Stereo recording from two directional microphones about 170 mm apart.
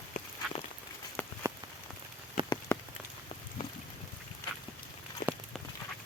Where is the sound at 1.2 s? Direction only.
10° left (ahead or behind).